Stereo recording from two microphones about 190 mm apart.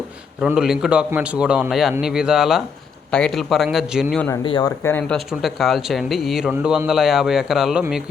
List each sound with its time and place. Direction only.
0.4 s speech: 5° right (ahead or behind)
4.4 s speech: 25° left (ahead or behind)
4.8 s speech: 10° left (ahead or behind)